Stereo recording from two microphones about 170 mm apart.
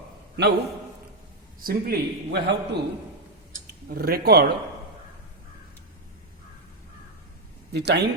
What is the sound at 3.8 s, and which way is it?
Speech, 65° right (ahead or behind).